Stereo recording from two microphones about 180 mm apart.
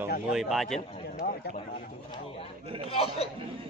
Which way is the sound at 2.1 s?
30° left (ahead or behind).